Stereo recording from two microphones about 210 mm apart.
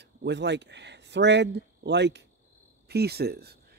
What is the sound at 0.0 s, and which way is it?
A man's voice, 55° right (ahead or behind).